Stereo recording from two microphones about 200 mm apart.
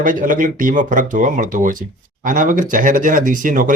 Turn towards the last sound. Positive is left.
turn(degrees=-40)  # may be behind; listen again after turning